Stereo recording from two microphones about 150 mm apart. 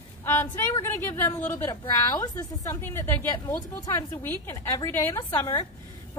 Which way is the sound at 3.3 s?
25° left (ahead or behind).